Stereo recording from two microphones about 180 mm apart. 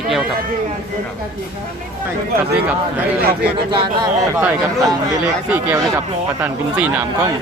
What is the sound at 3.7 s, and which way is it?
Speech, 25° right (ahead or behind).